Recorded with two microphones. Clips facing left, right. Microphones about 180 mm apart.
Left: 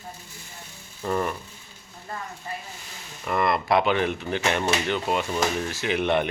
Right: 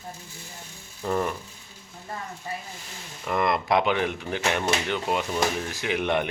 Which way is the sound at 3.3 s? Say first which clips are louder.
Left 1 dB; 15° right (ahead or behind).